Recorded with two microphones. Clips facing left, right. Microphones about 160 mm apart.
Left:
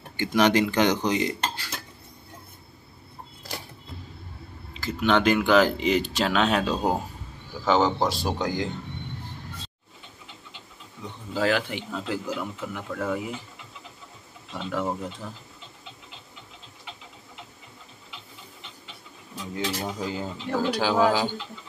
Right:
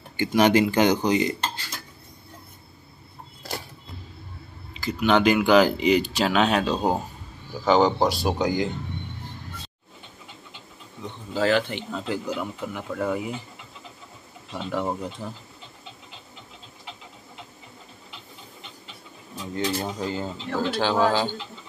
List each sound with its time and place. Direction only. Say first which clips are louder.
0.2 s speech: right 2 dB; 5° right (ahead or behind)
4.7 s speech: right 2 dB; 5° right (ahead or behind)
8.3 s speech: right 4 dB; 15° right (ahead or behind)
11.3 s speech: right 2 dB; 5° left (ahead or behind)
14.5 s speech: right 1 dB; centre (ahead or behind)
19.5 s speech: right 3 dB; 5° left (ahead or behind)